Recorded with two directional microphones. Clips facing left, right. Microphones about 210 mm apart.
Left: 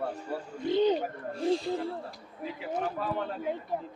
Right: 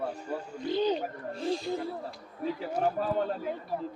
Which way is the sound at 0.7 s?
25° left (ahead or behind).